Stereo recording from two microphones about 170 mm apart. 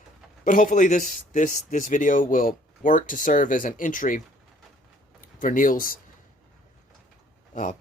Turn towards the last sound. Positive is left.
turn(degrees=50)  # may be behind; listen again after turning